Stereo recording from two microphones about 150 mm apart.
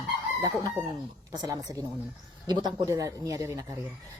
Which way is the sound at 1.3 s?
25° right (ahead or behind).